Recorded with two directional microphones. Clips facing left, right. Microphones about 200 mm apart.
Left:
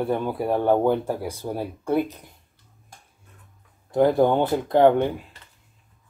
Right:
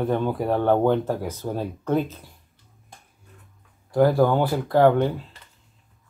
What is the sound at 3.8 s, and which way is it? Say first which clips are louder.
Speech: even; 20° left (ahead or behind).